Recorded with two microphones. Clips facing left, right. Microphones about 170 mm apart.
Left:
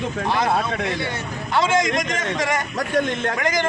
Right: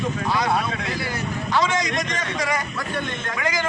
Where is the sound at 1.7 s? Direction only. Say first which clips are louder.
Left 4 dB; 50° left (ahead or behind).